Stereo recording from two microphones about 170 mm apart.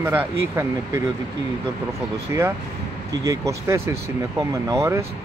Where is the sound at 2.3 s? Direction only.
15° right (ahead or behind).